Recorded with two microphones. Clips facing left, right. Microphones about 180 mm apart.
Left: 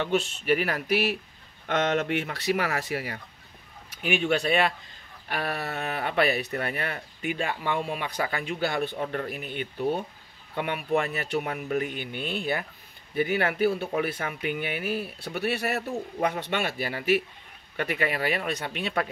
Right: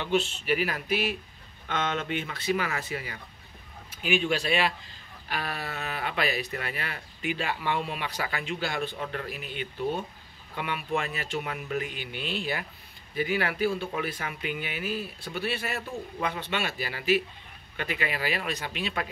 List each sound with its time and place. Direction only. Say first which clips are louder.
0.5 s speech: left 4 dB; 60° left (ahead or behind)
11.4 s speech: left 4 dB; 40° left (ahead or behind); by 19.0 s 60° left (ahead or behind)